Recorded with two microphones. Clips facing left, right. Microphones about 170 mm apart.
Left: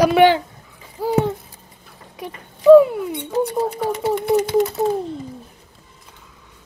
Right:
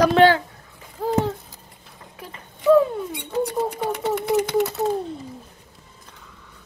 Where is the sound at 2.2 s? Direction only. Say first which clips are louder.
Left 6 dB; 15° left (ahead or behind).